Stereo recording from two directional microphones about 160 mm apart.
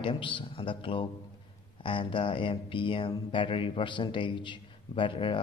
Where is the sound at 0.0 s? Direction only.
30° left (ahead or behind).